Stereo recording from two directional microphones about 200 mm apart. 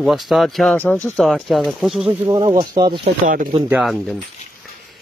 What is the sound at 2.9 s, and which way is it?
Speech, 45° right (ahead or behind).